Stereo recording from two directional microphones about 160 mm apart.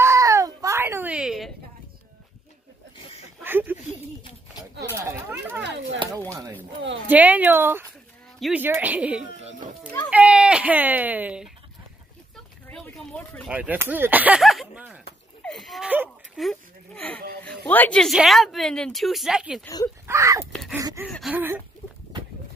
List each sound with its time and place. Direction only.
0.0 s baby cry: 20° right (ahead or behind); by 1.5 s 5° right (ahead or behind)
3.4 s a sound: 15° right (ahead or behind)
4.9 s a sound: 15° right (ahead or behind)
7.1 s speech: 10° right (ahead or behind)
8.4 s speech: centre (ahead or behind)
9.4 s children playing: 45° right (ahead or behind)
10.0 s speech: 5° right (ahead or behind)
12.6 s a sound: 10° left (ahead or behind)
13.5 s speech: 10° right (ahead or behind)
16.3 s a sound: centre (ahead or behind)
17.6 s a woman's voice: 10° left (ahead or behind)
20.1 s speech: 20° right (ahead or behind)
21.1 s a woman's voice: centre (ahead or behind)
21.4 s speech: 10° right (ahead or behind)